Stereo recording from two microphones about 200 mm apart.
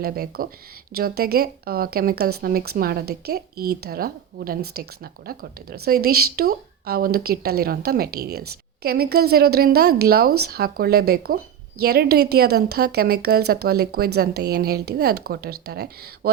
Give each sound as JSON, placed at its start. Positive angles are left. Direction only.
{"t": 0.0, "sound": "a woman's voice", "side_deg": -50}